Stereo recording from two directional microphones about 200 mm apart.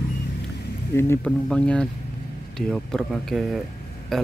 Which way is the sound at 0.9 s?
10° left (ahead or behind).